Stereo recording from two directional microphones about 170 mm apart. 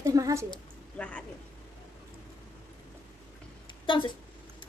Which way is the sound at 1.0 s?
10° left (ahead or behind).